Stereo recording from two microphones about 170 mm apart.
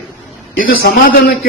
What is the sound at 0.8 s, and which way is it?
Speech, 70° left (ahead or behind).